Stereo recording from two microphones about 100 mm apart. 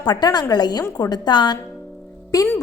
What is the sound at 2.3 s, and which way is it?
Speech, 35° left (ahead or behind).